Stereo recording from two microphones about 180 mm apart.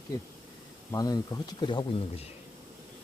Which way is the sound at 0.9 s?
20° left (ahead or behind).